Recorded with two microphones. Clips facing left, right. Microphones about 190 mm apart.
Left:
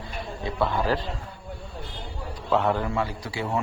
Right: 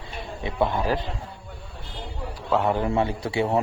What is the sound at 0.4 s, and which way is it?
Speech, 20° right (ahead or behind).